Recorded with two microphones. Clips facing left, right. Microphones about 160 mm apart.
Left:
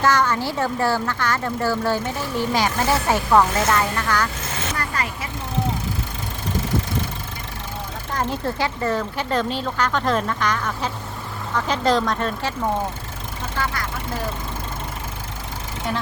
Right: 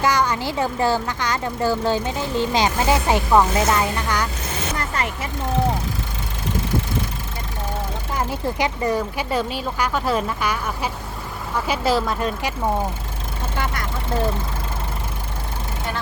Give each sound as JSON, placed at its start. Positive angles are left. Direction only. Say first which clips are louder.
{"t": 0.0, "sound": "speech", "louder": "left 1 dB", "side_deg": -10}
{"t": 4.8, "sound": "vehicle", "louder": "right 2 dB", "side_deg": -25}
{"t": 8.1, "sound": "speech", "louder": "left 1 dB", "side_deg": -10}